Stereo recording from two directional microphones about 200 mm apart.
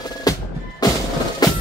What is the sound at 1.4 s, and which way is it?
Music, 20° left (ahead or behind).